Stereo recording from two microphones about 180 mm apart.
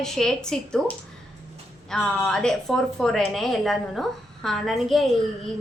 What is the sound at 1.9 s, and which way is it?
A woman's voice, 5° left (ahead or behind).